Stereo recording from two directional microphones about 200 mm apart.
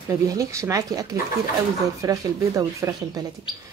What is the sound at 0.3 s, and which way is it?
Speech, 15° right (ahead or behind).